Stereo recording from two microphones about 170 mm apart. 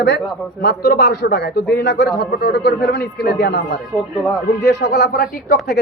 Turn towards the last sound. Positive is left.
turn(degrees=70)  # may be behind; listen again after turning